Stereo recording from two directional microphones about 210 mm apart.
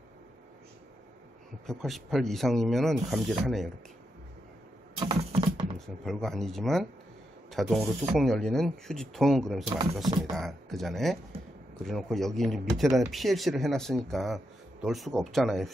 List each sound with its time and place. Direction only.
1.7 s speech: centre (ahead or behind)
4.9 s typing: 20° right (ahead or behind)
6.0 s speech: centre (ahead or behind)
9.7 s typing: 20° right (ahead or behind)
10.3 s speech: centre (ahead or behind)